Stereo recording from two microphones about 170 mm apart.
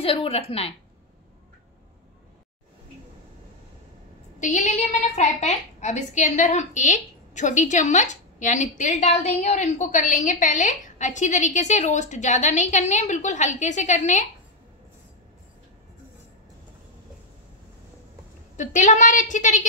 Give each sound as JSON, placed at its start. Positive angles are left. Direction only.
{"t": 0.0, "sound": "a woman's voice", "side_deg": 35}
{"t": 4.4, "sound": "a woman's voice", "side_deg": 45}
{"t": 18.6, "sound": "a woman's voice", "side_deg": 45}